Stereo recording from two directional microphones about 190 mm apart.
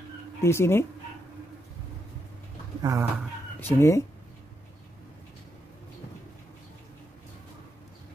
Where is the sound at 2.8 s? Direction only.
15° right (ahead or behind).